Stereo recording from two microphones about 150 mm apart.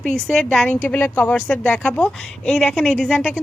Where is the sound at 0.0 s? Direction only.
5° left (ahead or behind).